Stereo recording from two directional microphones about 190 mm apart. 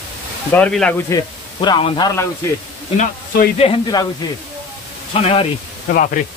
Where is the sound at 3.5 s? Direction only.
30° left (ahead or behind).